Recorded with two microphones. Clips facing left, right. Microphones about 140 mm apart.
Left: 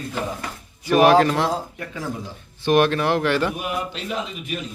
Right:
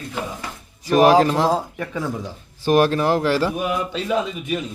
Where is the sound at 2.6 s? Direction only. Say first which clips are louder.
Right 1 dB; 40° right (ahead or behind).